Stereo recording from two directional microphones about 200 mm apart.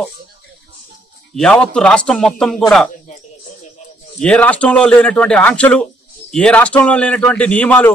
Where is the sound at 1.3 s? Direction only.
5° left (ahead or behind).